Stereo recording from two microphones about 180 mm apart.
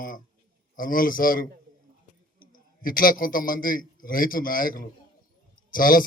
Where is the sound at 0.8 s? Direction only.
50° left (ahead or behind).